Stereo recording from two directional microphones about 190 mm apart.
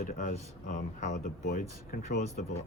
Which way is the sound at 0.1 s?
40° left (ahead or behind).